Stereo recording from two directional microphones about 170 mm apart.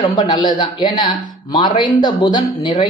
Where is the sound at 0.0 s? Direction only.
25° left (ahead or behind).